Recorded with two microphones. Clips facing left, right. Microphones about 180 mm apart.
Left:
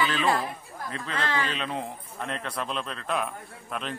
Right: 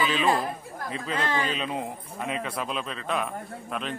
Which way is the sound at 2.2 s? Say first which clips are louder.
Right 2 dB; 5° right (ahead or behind).